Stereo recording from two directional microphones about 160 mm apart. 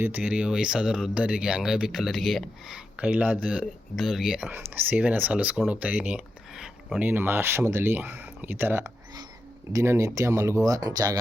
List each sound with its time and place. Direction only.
0.0 s speech: 10° right (ahead or behind); by 11.2 s 25° right (ahead or behind)